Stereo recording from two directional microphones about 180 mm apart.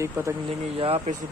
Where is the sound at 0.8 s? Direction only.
35° right (ahead or behind).